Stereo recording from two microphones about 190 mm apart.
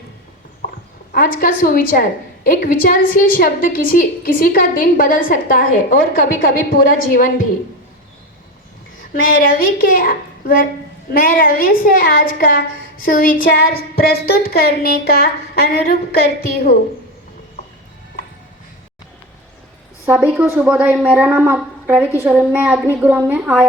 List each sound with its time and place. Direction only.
1.1 s a woman's voice: 50° left (ahead or behind)
9.2 s a woman's voice: 50° left (ahead or behind)
20.1 s a woman's voice: 5° right (ahead or behind)